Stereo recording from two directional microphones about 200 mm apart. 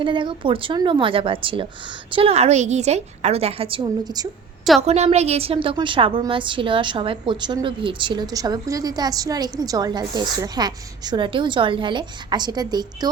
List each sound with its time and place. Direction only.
0.0 s a woman's voice: 25° right (ahead or behind)
4.8 s a woman's voice: 35° right (ahead or behind)